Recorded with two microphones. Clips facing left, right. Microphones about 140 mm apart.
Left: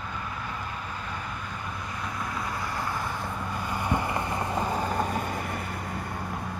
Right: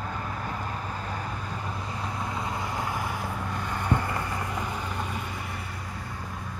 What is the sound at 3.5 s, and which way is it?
Vehicle, 5° left (ahead or behind).